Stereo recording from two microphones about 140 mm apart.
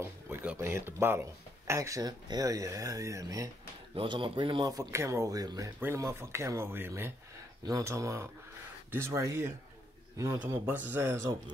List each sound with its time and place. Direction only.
0.0 s speech: 15° right (ahead or behind)
3.9 s a man's voice: 35° right (ahead or behind); by 11.3 s 20° right (ahead or behind)